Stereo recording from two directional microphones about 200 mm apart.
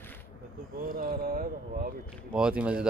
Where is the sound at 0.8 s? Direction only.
45° right (ahead or behind).